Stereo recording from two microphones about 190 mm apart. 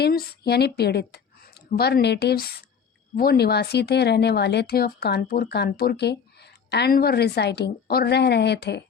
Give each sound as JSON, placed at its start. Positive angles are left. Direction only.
{"t": 0.0, "sound": "a woman's voice", "side_deg": 55}